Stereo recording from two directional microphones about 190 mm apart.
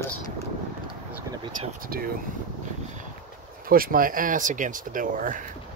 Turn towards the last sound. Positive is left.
turn(degrees=-45)  # may be behind; listen again after turning